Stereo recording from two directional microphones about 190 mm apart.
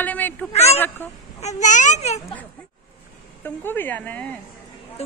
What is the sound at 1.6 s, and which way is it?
Speech, 40° left (ahead or behind).